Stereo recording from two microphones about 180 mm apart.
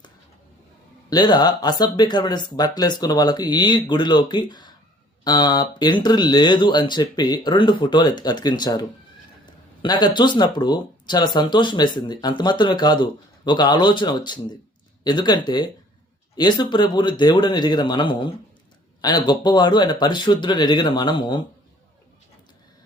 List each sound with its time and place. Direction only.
1.1 s speech: 25° left (ahead or behind)